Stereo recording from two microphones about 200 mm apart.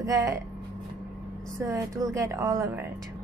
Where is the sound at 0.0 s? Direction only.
15° right (ahead or behind).